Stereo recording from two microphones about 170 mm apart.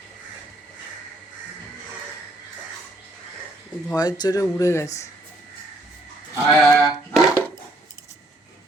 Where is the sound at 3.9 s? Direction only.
25° left (ahead or behind).